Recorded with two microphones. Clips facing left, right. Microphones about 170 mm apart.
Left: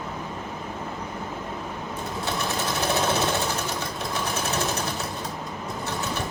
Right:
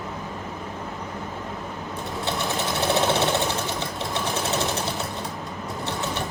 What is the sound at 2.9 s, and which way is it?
Sewing machine, 20° right (ahead or behind).